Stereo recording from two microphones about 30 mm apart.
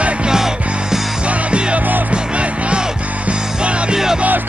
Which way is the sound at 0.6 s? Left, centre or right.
Right.